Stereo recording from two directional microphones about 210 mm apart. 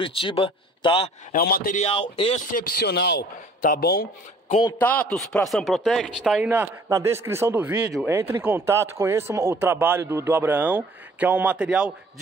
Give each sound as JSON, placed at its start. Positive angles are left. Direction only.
{"t": 0.0, "sound": "speech", "side_deg": 25}
{"t": 1.3, "sound": "a man's voice", "side_deg": 45}
{"t": 1.9, "sound": "speech", "side_deg": 25}
{"t": 2.5, "sound": "a man's voice", "side_deg": 45}
{"t": 4.5, "sound": "a man's voice", "side_deg": 20}
{"t": 4.7, "sound": "speech", "side_deg": 10}